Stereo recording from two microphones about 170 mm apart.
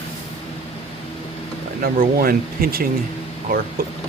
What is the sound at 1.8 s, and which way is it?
Speech, 60° right (ahead or behind).